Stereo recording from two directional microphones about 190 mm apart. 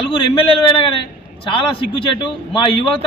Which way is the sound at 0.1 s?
30° left (ahead or behind).